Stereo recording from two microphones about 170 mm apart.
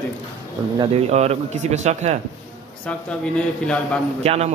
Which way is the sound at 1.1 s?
40° right (ahead or behind).